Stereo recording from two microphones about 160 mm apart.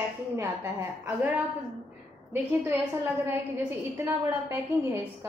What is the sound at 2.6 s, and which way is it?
A woman's voice, 15° right (ahead or behind).